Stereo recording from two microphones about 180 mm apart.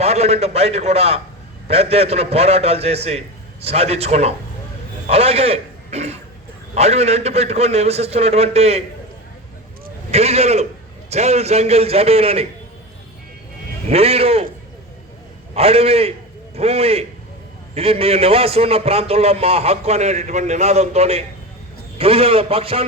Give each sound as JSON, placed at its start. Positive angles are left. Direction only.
{"t": 0.0, "sound": "a man's voice", "side_deg": -35}
{"t": 10.1, "sound": "a man's voice", "side_deg": -35}
{"t": 13.9, "sound": "a man's voice", "side_deg": -35}
{"t": 15.5, "sound": "a man's voice", "side_deg": -35}